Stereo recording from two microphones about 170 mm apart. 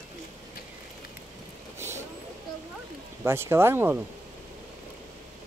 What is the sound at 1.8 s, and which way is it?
Vehicle, 15° right (ahead or behind).